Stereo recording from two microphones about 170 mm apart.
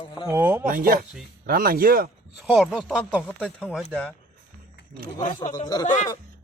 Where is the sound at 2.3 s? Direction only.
5° right (ahead or behind).